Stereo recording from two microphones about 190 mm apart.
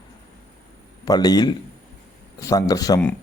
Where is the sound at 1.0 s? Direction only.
20° left (ahead or behind).